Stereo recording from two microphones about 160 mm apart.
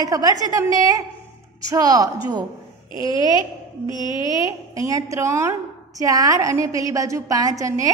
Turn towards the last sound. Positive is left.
turn(degrees=-20)  # may be behind; listen again after turning